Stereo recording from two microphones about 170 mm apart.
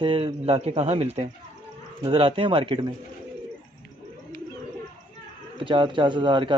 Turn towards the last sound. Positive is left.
turn(degrees=-30)  # may be behind; listen again after turning